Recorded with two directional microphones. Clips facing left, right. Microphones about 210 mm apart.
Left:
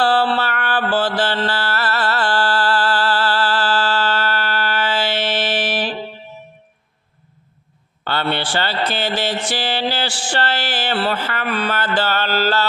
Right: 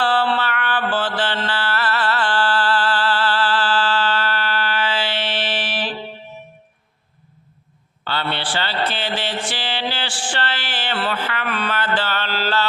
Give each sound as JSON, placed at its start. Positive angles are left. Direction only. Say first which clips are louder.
{"t": 0.0, "sound": "mantra", "louder": "left 2 dB", "side_deg": 40}
{"t": 8.0, "sound": "a man's voice", "louder": "left 4 dB", "side_deg": 50}
{"t": 8.9, "sound": "a sound", "louder": "left 4 dB", "side_deg": 40}